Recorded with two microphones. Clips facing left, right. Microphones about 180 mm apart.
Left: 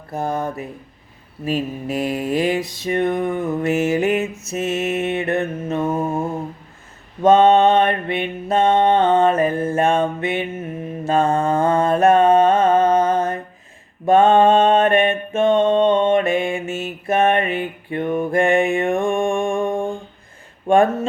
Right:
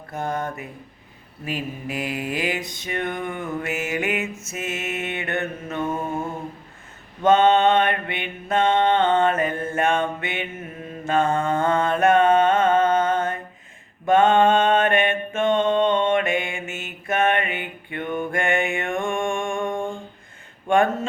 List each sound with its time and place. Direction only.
0.1 s mantra: 35° left (ahead or behind)